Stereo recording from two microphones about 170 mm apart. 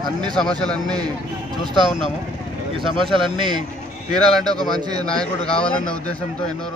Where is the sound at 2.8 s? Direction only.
Centre (ahead or behind).